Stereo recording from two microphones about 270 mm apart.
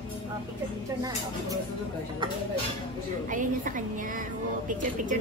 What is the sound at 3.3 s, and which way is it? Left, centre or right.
Speech, right.